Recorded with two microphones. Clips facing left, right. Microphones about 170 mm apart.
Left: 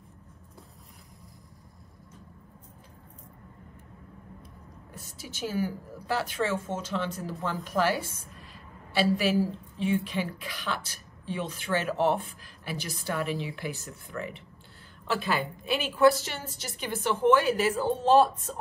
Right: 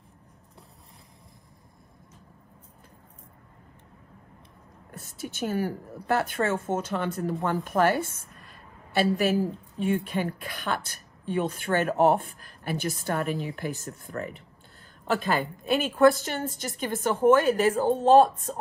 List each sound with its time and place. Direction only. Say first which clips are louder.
4.9 s a woman's voice: right 7 dB; 55° right (ahead or behind)